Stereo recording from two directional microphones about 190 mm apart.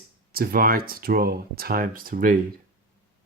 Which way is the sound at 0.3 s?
50° right (ahead or behind).